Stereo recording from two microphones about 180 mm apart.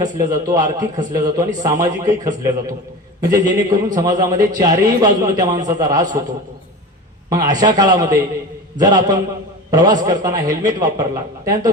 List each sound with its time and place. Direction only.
0.0 s a man's voice: 20° right (ahead or behind)
3.2 s a man's voice: 20° right (ahead or behind)
7.3 s a man's voice: 20° right (ahead or behind)